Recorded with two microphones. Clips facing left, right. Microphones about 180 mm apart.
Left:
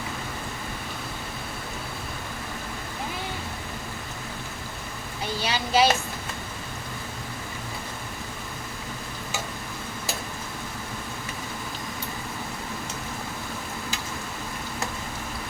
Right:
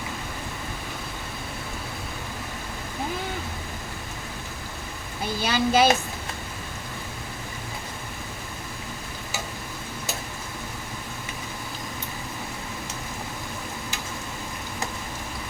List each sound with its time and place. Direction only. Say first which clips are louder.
5.5 s a woman's voice: right 2 dB; 50° right (ahead or behind)